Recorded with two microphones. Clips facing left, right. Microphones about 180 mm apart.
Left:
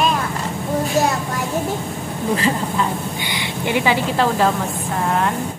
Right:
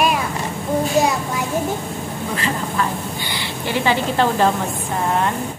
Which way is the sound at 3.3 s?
15° left (ahead or behind).